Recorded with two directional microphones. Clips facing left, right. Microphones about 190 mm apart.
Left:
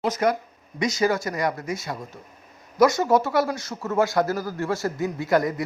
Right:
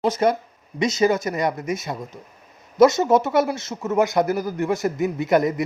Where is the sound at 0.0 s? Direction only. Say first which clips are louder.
Right 3 dB; 30° right (ahead or behind).